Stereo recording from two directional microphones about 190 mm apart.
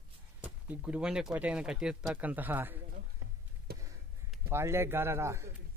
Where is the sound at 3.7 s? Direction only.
55° right (ahead or behind).